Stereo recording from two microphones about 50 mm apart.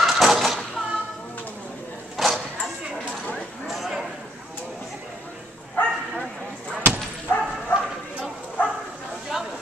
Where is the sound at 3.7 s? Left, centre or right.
Centre.